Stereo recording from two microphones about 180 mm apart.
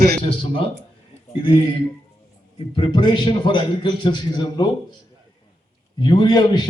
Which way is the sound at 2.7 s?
25° left (ahead or behind).